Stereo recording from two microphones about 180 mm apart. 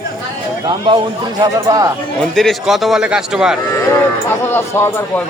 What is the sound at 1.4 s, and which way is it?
Speech, 20° right (ahead or behind).